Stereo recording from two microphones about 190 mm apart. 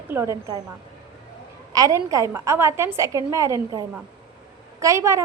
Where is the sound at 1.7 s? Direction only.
20° right (ahead or behind).